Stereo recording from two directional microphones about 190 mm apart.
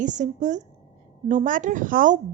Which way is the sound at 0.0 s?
40° right (ahead or behind).